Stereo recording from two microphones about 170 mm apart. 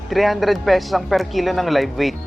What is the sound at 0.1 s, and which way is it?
Speech, centre (ahead or behind).